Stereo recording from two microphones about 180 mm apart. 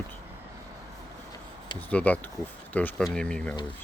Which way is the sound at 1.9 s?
5° left (ahead or behind).